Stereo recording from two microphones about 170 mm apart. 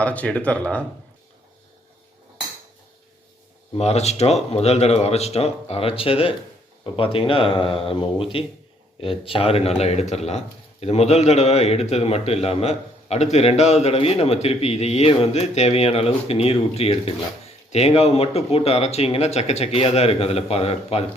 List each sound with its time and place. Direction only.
0.0 s speech: 10° left (ahead or behind)
3.8 s speech: 40° left (ahead or behind)